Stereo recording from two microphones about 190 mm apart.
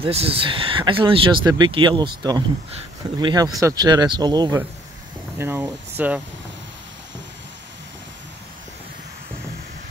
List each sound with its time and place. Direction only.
0.0 s speech: 30° right (ahead or behind); by 6.2 s 10° right (ahead or behind)